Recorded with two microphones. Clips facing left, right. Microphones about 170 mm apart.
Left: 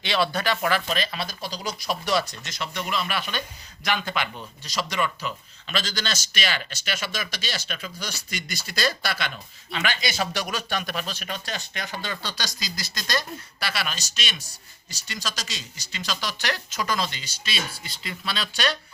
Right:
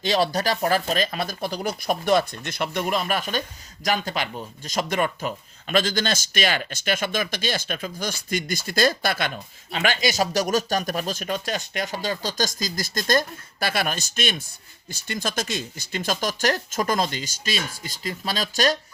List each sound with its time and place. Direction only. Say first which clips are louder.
0.0 s speech: right 3 dB; 40° right (ahead or behind)